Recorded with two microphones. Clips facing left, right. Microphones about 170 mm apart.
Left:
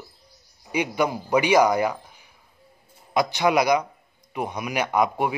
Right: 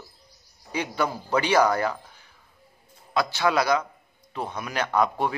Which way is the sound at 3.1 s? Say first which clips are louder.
Left 3 dB; 15° left (ahead or behind).